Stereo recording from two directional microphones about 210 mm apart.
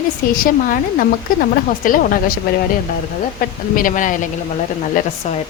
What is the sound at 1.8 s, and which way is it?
Speech, 40° left (ahead or behind).